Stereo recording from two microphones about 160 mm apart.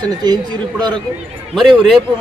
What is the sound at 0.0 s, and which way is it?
Speech, 25° right (ahead or behind).